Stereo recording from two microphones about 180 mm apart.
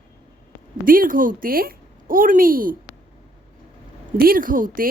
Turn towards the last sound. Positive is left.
turn(degrees=-50)  # may be behind; listen again after turning